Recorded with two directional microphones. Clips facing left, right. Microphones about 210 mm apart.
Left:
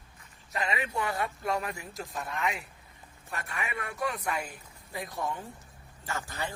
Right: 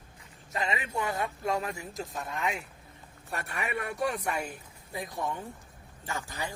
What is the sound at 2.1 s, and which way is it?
Speech, centre (ahead or behind).